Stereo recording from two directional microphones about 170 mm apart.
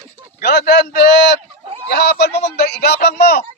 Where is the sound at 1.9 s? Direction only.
70° left (ahead or behind).